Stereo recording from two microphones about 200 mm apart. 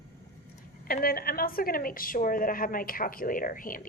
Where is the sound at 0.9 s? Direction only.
50° left (ahead or behind).